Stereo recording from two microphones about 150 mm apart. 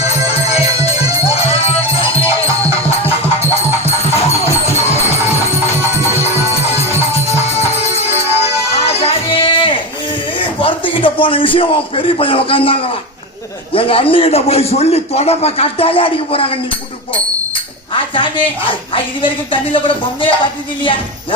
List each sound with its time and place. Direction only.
1.6 s music: 40° left (ahead or behind)
3.5 s music: 40° left (ahead or behind)
6.6 s music: 40° left (ahead or behind)
10.6 s a man's voice: 35° left (ahead or behind)
13.7 s speech: 40° left (ahead or behind)
17.9 s speech: 35° left (ahead or behind)